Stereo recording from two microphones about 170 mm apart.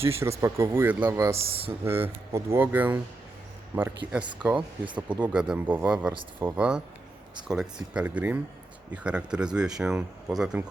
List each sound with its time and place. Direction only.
0.0 s speech: 15° right (ahead or behind)